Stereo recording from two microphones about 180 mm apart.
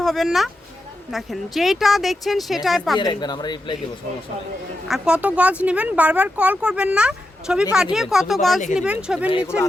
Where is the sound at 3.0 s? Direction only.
25° left (ahead or behind).